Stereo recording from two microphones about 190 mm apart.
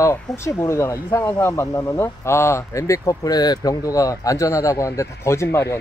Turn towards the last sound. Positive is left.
turn(degrees=15)  # may be behind; listen again after turning